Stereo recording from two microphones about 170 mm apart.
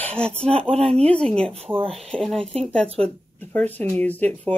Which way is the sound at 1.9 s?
Centre (ahead or behind).